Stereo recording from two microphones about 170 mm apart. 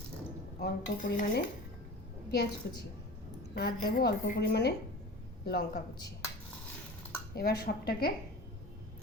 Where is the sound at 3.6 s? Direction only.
70° left (ahead or behind).